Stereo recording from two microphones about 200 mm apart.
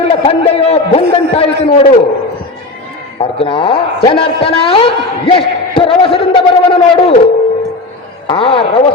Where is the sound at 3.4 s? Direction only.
25° left (ahead or behind).